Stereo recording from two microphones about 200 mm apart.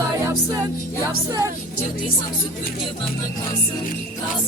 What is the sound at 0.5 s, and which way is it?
Music, 20° right (ahead or behind).